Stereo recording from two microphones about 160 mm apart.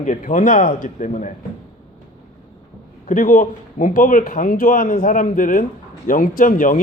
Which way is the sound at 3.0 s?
55° left (ahead or behind).